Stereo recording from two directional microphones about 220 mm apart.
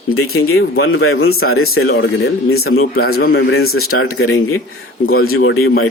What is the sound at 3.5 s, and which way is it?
Speech, 70° left (ahead or behind).